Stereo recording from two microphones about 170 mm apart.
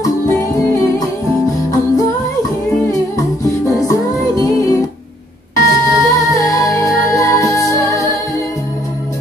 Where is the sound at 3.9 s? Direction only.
20° left (ahead or behind).